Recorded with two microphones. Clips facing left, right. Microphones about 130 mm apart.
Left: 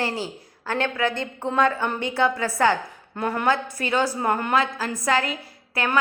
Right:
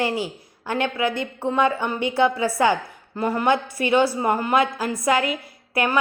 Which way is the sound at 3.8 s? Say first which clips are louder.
Right 4 dB; 15° right (ahead or behind).